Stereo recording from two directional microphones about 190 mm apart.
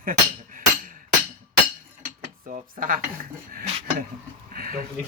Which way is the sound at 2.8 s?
50° right (ahead or behind).